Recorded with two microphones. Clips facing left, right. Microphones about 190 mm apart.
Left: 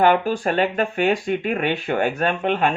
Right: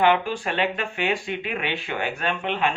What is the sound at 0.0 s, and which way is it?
Speech, 45° left (ahead or behind).